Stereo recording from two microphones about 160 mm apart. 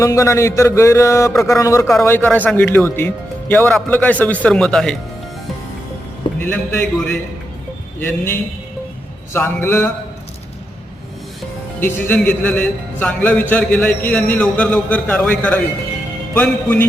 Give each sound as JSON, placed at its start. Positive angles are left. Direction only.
{"t": 0.0, "sound": "a man's voice", "side_deg": 20}
{"t": 6.4, "sound": "a man's voice", "side_deg": 5}
{"t": 7.9, "sound": "a man's voice", "side_deg": 15}
{"t": 11.8, "sound": "a man's voice", "side_deg": 10}